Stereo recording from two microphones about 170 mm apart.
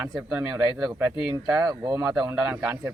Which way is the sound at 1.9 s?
5° right (ahead or behind).